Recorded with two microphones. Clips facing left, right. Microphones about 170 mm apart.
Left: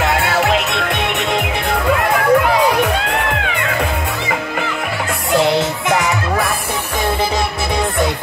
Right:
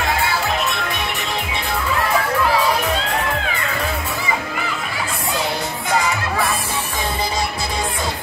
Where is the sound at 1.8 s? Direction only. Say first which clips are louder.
Left 5 dB; 65° left (ahead or behind).